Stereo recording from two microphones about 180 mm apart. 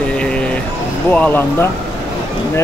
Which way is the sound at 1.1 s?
10° left (ahead or behind).